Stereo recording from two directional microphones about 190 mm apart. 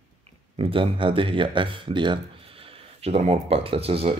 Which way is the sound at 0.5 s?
30° right (ahead or behind).